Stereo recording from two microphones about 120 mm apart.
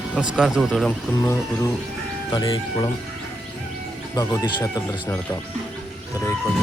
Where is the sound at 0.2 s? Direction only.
5° right (ahead or behind).